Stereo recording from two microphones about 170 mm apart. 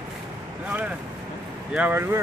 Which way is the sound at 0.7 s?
10° right (ahead or behind).